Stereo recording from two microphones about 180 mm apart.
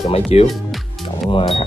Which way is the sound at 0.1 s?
35° left (ahead or behind).